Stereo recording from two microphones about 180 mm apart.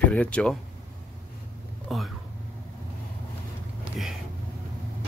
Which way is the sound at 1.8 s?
Centre (ahead or behind).